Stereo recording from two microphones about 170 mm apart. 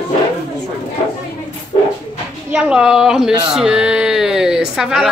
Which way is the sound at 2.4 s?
5° right (ahead or behind).